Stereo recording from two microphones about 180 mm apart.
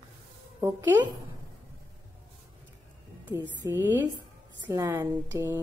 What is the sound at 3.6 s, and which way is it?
Speech, 10° right (ahead or behind).